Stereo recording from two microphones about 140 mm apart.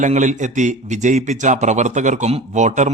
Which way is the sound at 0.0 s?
60° right (ahead or behind).